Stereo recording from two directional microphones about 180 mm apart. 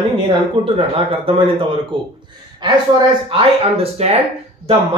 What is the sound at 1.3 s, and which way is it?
Speech, 30° right (ahead or behind).